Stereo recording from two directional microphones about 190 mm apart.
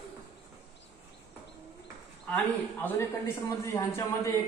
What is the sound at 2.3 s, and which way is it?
A man's voice, 10° left (ahead or behind).